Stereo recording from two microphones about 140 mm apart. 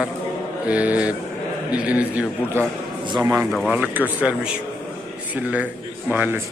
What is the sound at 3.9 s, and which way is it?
A man's voice, 10° right (ahead or behind).